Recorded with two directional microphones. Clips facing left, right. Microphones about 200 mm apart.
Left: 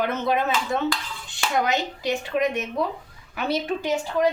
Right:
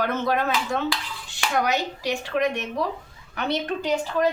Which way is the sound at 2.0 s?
Centre (ahead or behind).